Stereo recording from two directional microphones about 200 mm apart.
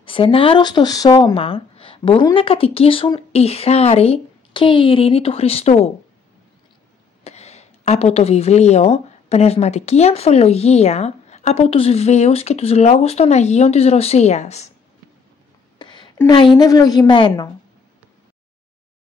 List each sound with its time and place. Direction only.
0.0 s speech: 25° left (ahead or behind)
7.2 s speech: 30° left (ahead or behind)
16.3 s speech: 20° left (ahead or behind)